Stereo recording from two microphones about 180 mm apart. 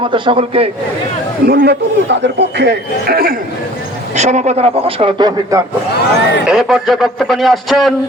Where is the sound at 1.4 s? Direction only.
65° right (ahead or behind).